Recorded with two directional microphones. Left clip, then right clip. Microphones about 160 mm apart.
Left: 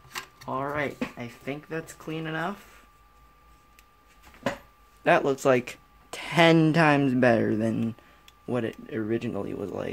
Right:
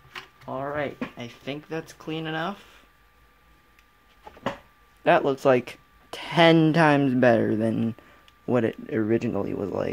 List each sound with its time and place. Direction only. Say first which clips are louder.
0.5 s speech: even; 5° left (ahead or behind)
1.4 s speech: right 1 dB; 20° right (ahead or behind)
5.0 s speech: right 2 dB; 10° right (ahead or behind)
8.5 s speech: right 6 dB; 40° right (ahead or behind)